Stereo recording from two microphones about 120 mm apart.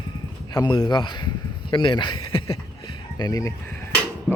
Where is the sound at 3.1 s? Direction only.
30° left (ahead or behind).